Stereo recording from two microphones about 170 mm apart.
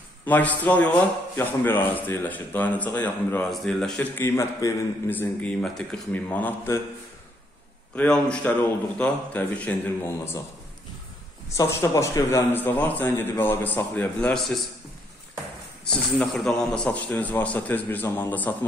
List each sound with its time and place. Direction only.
0.2 s a man's voice: 10° left (ahead or behind)
7.9 s a man's voice: 5° left (ahead or behind)
11.5 s a man's voice: 15° left (ahead or behind)
15.9 s a man's voice: 5° left (ahead or behind)